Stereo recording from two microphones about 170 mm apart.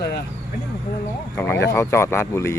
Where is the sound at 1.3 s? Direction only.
15° left (ahead or behind).